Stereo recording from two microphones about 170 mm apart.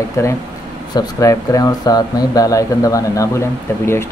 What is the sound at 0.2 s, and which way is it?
Speech, 15° left (ahead or behind).